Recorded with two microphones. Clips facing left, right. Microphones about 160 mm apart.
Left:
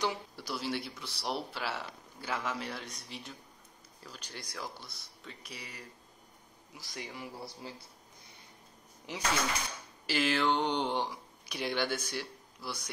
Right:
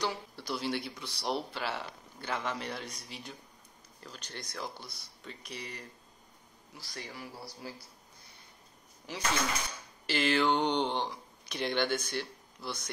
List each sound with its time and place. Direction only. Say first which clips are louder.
0.0 s speech: left 1 dB; 10° left (ahead or behind)
6.7 s speech: left 1 dB; 15° left (ahead or behind)
10.0 s speech: right 1 dB; 5° left (ahead or behind)